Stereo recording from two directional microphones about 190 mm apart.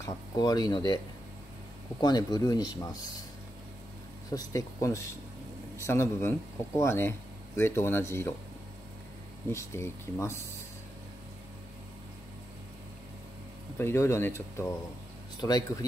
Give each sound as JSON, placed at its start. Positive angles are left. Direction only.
{"t": 0.0, "sound": "speech", "side_deg": 20}
{"t": 4.3, "sound": "speech", "side_deg": 20}
{"t": 9.5, "sound": "speech", "side_deg": 15}
{"t": 13.7, "sound": "speech", "side_deg": 15}